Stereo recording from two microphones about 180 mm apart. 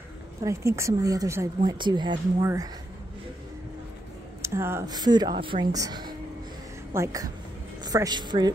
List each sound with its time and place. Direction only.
0.4 s a woman's voice: 15° right (ahead or behind)
4.4 s speech: 15° right (ahead or behind)